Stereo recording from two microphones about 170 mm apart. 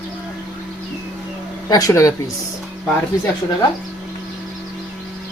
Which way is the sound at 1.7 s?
20° left (ahead or behind).